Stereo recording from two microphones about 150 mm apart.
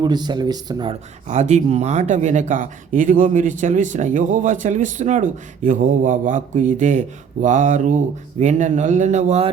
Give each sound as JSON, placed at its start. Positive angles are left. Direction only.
{"t": 0.0, "sound": "speech", "side_deg": -30}
{"t": 1.3, "sound": "speech", "side_deg": -50}